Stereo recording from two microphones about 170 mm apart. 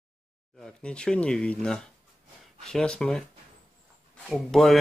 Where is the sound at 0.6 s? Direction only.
5° left (ahead or behind).